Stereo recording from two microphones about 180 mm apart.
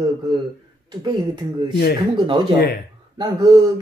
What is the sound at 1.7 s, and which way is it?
Speech, 60° left (ahead or behind).